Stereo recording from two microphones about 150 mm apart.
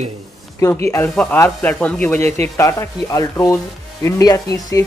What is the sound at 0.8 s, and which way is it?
Speech, 10° left (ahead or behind).